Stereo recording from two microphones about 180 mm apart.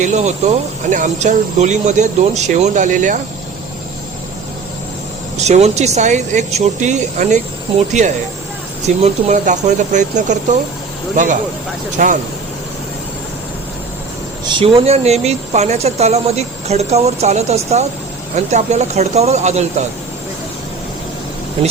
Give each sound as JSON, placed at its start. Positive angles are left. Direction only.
{"t": 0.0, "sound": "speech", "side_deg": -40}
{"t": 5.4, "sound": "speech", "side_deg": -35}
{"t": 12.0, "sound": "speech", "side_deg": -50}
{"t": 14.4, "sound": "speech", "side_deg": -30}